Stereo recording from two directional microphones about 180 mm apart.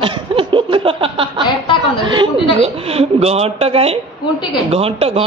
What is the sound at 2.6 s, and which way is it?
Laughter, 35° right (ahead or behind).